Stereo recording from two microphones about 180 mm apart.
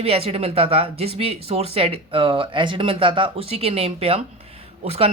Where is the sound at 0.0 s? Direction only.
35° right (ahead or behind).